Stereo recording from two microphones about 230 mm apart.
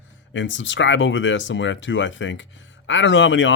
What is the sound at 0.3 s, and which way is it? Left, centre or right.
Speech, left.